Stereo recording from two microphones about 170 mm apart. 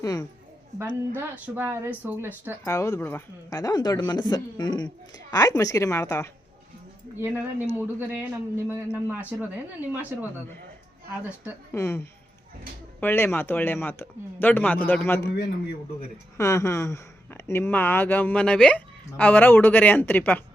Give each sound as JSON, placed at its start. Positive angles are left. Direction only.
{"t": 0.0, "sound": "speech", "side_deg": 20}
{"t": 0.8, "sound": "a woman's voice", "side_deg": -10}
{"t": 2.6, "sound": "speech", "side_deg": 15}
{"t": 7.8, "sound": "a woman's voice", "side_deg": -10}
{"t": 11.7, "sound": "speech", "side_deg": 15}
{"t": 16.4, "sound": "speech", "side_deg": 20}